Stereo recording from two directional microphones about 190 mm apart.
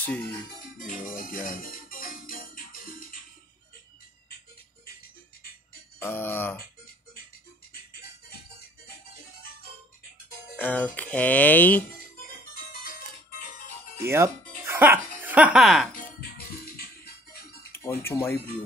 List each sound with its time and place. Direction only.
0.0 s speech: 10° left (ahead or behind)
0.7 s music: 45° left (ahead or behind)
5.9 s music: 10° left (ahead or behind)
10.5 s speech: 10° left (ahead or behind)
13.9 s music: 15° right (ahead or behind)
16.2 s music: 50° left (ahead or behind)
17.7 s speech: 15° left (ahead or behind)